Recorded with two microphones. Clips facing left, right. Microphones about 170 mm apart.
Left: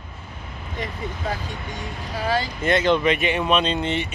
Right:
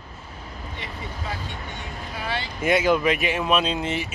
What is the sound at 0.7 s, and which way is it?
Speech, 40° left (ahead or behind).